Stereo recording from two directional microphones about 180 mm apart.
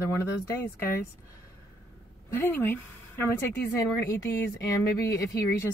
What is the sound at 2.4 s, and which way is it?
Speech, 10° left (ahead or behind).